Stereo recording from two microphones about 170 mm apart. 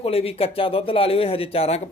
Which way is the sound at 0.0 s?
35° left (ahead or behind).